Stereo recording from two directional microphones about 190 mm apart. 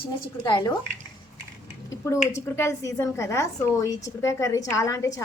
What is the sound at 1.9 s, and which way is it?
A woman's voice, 15° left (ahead or behind).